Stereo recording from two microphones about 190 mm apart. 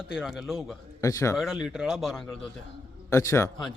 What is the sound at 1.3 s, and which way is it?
Speech, centre (ahead or behind).